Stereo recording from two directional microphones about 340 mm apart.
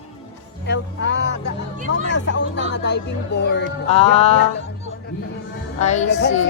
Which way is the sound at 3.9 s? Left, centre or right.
Centre.